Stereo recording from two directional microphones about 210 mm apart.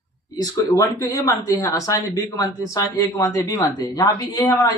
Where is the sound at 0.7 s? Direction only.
15° left (ahead or behind).